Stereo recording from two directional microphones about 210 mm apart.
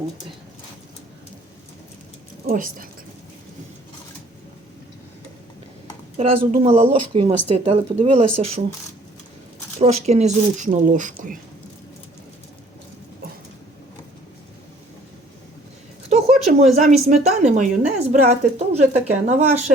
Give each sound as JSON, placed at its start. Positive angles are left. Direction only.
{"t": 2.5, "sound": "a woman's voice", "side_deg": -40}
{"t": 6.1, "sound": "speech", "side_deg": -30}
{"t": 9.8, "sound": "a woman's voice", "side_deg": -30}
{"t": 16.1, "sound": "a sound", "side_deg": -30}
{"t": 16.7, "sound": "a woman's voice", "side_deg": -35}